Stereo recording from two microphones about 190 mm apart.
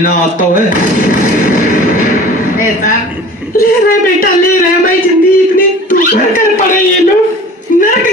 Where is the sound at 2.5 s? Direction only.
45° left (ahead or behind).